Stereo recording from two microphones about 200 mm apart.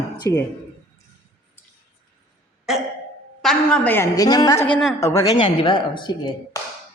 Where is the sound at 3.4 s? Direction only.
5° left (ahead or behind).